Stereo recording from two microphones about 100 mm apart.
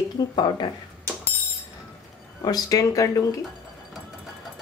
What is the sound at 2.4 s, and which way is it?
Speech, 40° left (ahead or behind).